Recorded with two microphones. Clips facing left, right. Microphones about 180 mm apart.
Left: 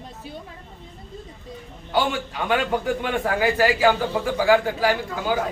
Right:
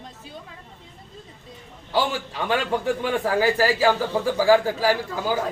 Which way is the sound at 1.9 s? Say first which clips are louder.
Left 1 dB; 30° right (ahead or behind).